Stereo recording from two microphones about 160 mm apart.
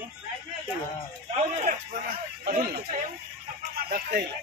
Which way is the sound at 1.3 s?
50° right (ahead or behind).